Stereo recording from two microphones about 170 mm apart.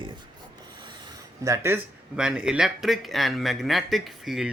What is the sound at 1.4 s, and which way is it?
Speech, 15° right (ahead or behind).